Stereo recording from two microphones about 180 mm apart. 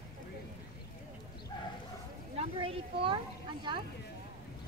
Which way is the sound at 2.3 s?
30° right (ahead or behind).